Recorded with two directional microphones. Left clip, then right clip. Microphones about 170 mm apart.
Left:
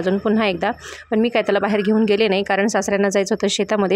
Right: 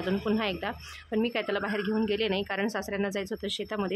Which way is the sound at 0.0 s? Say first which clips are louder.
Left 11 dB; 40° left (ahead or behind).